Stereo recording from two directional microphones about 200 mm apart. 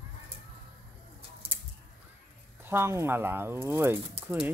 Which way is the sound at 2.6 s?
10° right (ahead or behind).